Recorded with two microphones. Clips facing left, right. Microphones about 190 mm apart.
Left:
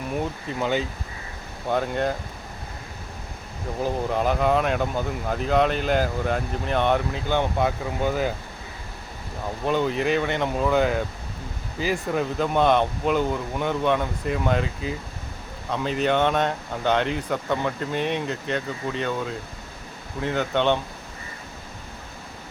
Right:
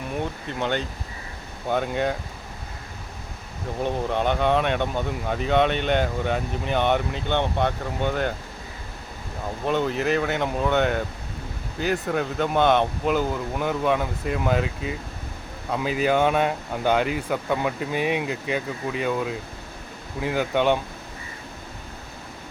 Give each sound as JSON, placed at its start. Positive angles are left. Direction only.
{"t": 0.4, "sound": "speech", "side_deg": 5}
{"t": 3.8, "sound": "speech", "side_deg": 0}
{"t": 9.6, "sound": "speech", "side_deg": 0}